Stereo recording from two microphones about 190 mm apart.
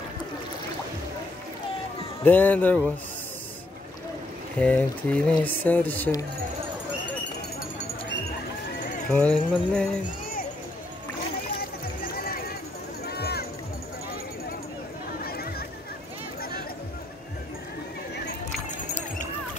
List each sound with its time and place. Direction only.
2.2 s speech: 10° left (ahead or behind)
4.6 s speech: 5° left (ahead or behind)
9.1 s music: 5° left (ahead or behind)
11.5 s a sound: 50° left (ahead or behind)
13.0 s music: 55° left (ahead or behind)
15.2 s a sound: 55° left (ahead or behind)